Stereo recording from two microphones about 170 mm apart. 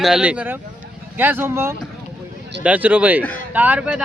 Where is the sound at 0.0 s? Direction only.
5° right (ahead or behind).